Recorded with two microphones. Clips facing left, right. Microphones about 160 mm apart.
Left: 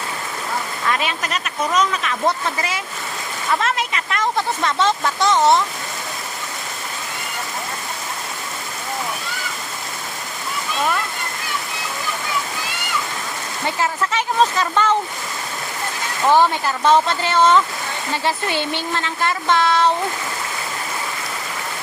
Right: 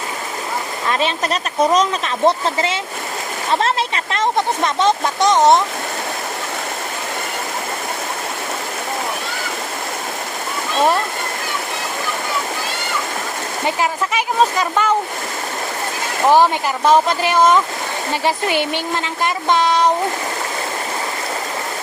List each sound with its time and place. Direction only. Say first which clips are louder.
0.9 s speech: right 4 dB; 30° right (ahead or behind)
13.7 s speech: right 2 dB; 15° right (ahead or behind)
16.2 s speech: right 2 dB; 15° right (ahead or behind)